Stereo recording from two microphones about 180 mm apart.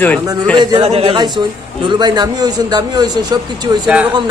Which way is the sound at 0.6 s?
25° right (ahead or behind).